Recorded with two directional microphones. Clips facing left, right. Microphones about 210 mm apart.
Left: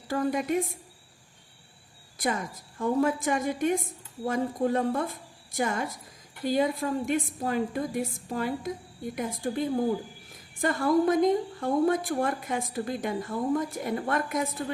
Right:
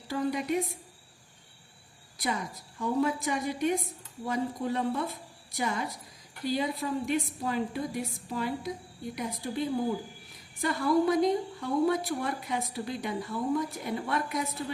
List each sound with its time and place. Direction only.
0.1 s a woman's voice: 50° left (ahead or behind)
2.1 s a woman's voice: 50° left (ahead or behind)